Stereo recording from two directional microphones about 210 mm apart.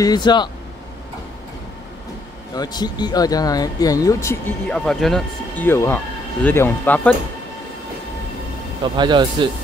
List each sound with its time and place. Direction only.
0.0 s speech: 20° left (ahead or behind)
2.5 s speech: 20° left (ahead or behind)
8.8 s speech: 20° right (ahead or behind)